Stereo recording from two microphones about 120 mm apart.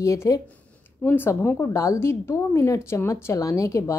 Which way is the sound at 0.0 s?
25° left (ahead or behind).